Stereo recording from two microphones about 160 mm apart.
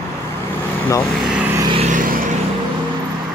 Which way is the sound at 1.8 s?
55° right (ahead or behind).